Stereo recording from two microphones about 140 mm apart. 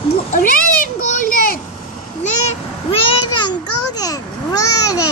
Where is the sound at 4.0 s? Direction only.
25° left (ahead or behind).